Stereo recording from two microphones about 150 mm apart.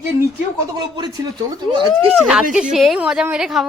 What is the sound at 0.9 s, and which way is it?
Speech, 25° right (ahead or behind).